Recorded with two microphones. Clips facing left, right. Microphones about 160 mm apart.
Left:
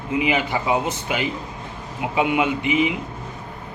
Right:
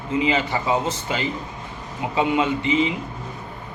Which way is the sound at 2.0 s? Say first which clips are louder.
Even; 15° left (ahead or behind).